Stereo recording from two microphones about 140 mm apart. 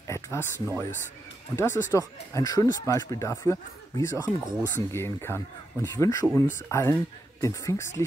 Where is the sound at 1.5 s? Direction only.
20° left (ahead or behind).